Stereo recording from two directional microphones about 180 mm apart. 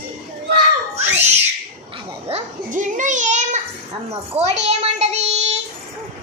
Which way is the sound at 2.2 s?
40° right (ahead or behind).